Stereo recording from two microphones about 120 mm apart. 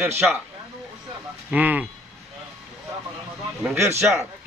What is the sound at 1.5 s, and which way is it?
Speech, 15° right (ahead or behind).